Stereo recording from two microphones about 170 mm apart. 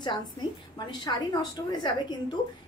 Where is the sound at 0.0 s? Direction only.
25° left (ahead or behind).